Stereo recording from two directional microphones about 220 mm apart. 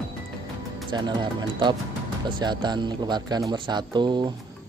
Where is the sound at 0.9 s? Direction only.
20° right (ahead or behind).